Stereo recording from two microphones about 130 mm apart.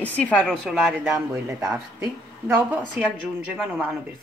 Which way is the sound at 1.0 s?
25° right (ahead or behind).